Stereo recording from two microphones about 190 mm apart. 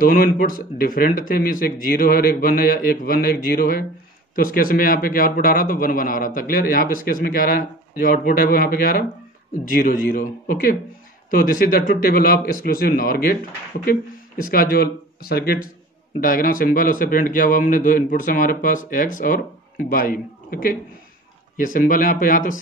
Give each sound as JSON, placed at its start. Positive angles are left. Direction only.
{"t": 0.0, "sound": "a man's voice", "side_deg": 50}